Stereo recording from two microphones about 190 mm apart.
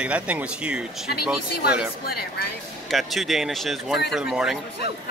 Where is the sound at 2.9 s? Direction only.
Centre (ahead or behind).